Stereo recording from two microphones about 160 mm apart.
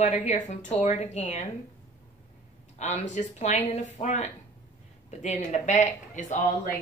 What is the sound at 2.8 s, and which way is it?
Speech, 45° left (ahead or behind).